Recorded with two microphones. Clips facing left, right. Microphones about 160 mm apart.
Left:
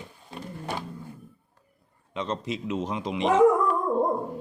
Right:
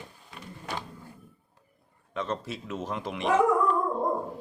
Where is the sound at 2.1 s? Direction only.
15° left (ahead or behind).